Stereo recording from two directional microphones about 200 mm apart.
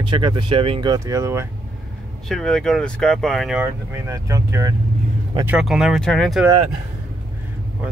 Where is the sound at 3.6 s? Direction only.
15° right (ahead or behind).